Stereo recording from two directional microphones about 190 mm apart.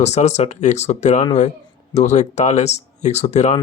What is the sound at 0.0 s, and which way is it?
Speech, 35° left (ahead or behind).